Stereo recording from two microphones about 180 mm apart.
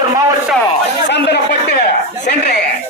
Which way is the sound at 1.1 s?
70° left (ahead or behind).